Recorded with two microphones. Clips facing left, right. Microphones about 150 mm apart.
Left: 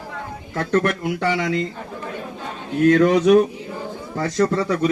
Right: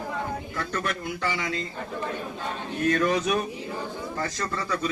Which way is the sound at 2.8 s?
70° left (ahead or behind).